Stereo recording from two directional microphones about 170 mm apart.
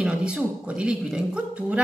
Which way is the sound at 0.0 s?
5° right (ahead or behind).